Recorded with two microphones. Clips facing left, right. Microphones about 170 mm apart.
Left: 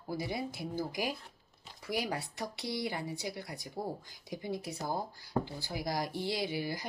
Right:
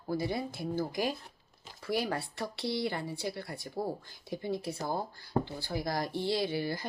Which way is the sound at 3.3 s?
15° left (ahead or behind).